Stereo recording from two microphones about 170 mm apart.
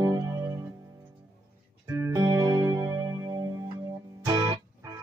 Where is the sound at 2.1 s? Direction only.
20° right (ahead or behind).